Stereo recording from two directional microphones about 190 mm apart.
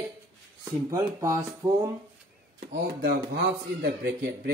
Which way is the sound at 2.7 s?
55° right (ahead or behind).